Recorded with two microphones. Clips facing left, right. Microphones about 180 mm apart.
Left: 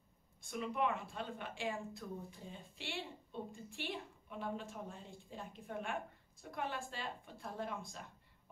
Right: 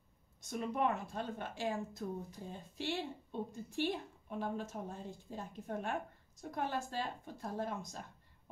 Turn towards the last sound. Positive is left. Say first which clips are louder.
# right 4 dB
turn(degrees=-40)  # may be behind; listen again after turning